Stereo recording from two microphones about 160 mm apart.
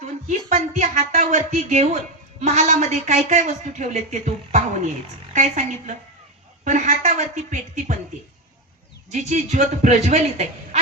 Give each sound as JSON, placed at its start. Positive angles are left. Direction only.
{"t": 0.0, "sound": "speech", "side_deg": -45}
{"t": 9.1, "sound": "speech", "side_deg": -45}